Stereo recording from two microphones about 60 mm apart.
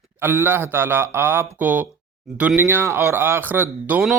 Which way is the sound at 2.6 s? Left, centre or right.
Right.